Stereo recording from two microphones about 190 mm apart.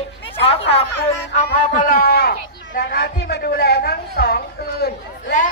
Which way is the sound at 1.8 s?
50° left (ahead or behind).